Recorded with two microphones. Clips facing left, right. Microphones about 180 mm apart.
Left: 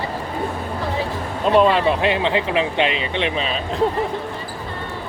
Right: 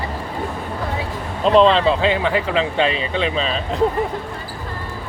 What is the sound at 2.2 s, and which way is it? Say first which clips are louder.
Speech: even; 20° left (ahead or behind).